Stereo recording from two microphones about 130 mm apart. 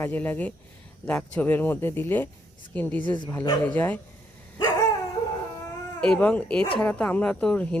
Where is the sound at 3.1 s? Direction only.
30° left (ahead or behind).